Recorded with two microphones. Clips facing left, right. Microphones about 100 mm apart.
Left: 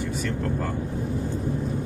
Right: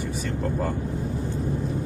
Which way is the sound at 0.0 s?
75° left (ahead or behind).